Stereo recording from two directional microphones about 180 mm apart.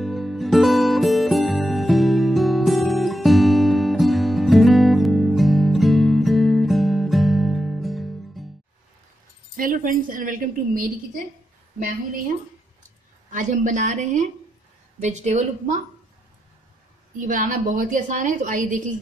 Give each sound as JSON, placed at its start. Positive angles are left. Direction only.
{"t": 0.0, "sound": "music", "side_deg": 0}
{"t": 9.6, "sound": "a woman's voice", "side_deg": -50}
{"t": 13.3, "sound": "a woman's voice", "side_deg": -45}
{"t": 17.2, "sound": "a woman's voice", "side_deg": -50}